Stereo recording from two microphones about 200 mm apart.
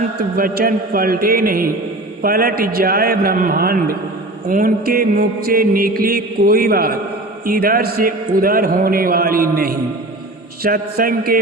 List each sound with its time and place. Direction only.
0.3 s mantra: 45° right (ahead or behind)